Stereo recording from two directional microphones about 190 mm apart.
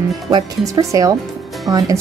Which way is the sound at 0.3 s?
20° right (ahead or behind).